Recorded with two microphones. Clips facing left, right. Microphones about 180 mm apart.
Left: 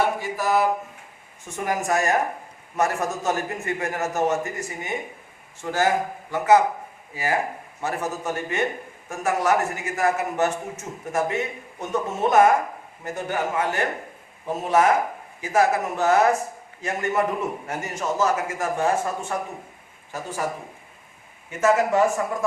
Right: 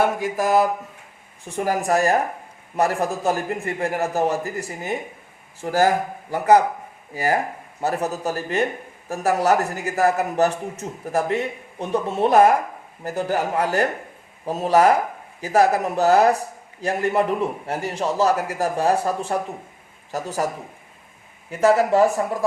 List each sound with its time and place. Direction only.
0.0 s mantra: 50° right (ahead or behind)
1.5 s a man's voice: 30° right (ahead or behind)
7.8 s a man's voice: 35° right (ahead or behind)
21.6 s a man's voice: 35° right (ahead or behind)